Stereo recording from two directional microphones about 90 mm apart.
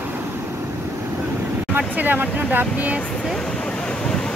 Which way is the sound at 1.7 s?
20° right (ahead or behind).